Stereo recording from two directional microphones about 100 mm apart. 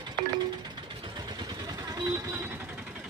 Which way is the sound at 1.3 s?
45° right (ahead or behind).